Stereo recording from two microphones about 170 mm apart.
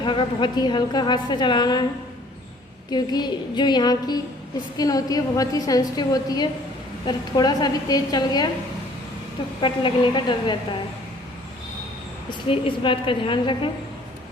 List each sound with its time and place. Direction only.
0.0 s a woman's voice: 30° left (ahead or behind)
2.9 s a woman's voice: 25° left (ahead or behind)
9.6 s a woman's voice: 30° left (ahead or behind)
12.3 s a woman's voice: 30° left (ahead or behind)